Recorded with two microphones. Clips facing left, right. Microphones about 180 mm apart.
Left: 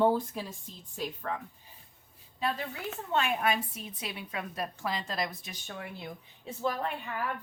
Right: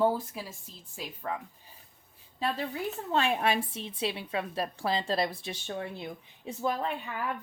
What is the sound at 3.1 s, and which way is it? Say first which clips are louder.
A woman's voice: right 1 dB; 30° right (ahead or behind).